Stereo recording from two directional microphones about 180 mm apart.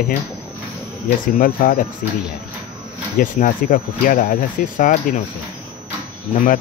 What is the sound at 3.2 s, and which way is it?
Speech, 50° left (ahead or behind).